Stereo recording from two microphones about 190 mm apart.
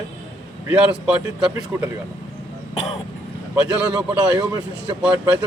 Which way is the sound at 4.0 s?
20° right (ahead or behind).